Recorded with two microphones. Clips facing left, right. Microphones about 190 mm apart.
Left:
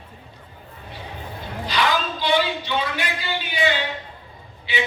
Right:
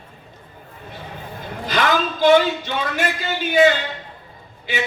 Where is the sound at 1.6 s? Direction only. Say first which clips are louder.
Right 3 dB; 45° right (ahead or behind).